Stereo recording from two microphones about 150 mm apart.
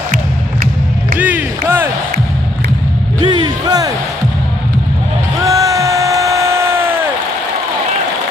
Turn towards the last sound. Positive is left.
turn(degrees=-15)  # may be behind; listen again after turning